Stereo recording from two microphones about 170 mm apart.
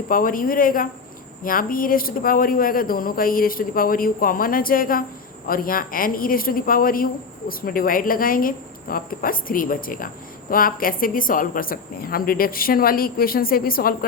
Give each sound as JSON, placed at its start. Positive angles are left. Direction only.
{"t": 0.1, "sound": "speech", "side_deg": 55}